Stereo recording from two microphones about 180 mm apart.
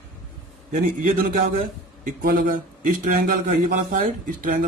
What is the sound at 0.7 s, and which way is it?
A man's voice, 50° right (ahead or behind).